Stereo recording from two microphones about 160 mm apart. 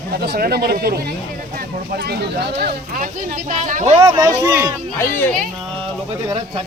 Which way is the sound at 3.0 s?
50° right (ahead or behind).